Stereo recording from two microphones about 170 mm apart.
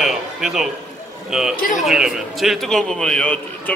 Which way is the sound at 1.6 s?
50° left (ahead or behind).